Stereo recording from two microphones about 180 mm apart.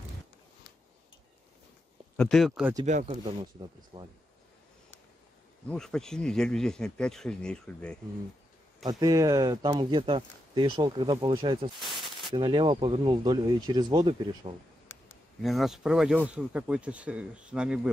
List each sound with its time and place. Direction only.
2.1 s speech: centre (ahead or behind)
2.8 s speech: 40° right (ahead or behind)
3.9 s speech: 30° right (ahead or behind)
5.7 s speech: 5° left (ahead or behind)
8.8 s speech: 20° right (ahead or behind)
11.8 s a sound: centre (ahead or behind)
12.3 s speech: 25° right (ahead or behind)
14.9 s a sound: 15° left (ahead or behind)
15.4 s speech: centre (ahead or behind)